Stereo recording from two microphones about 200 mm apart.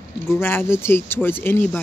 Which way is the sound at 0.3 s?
10° left (ahead or behind).